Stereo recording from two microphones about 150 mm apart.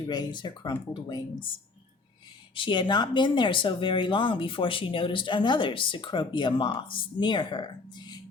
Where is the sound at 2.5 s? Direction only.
30° left (ahead or behind).